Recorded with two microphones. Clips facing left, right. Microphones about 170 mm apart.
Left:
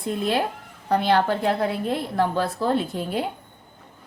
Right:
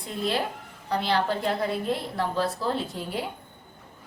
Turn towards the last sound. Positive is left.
turn(degrees=60)  # may be behind; listen again after turning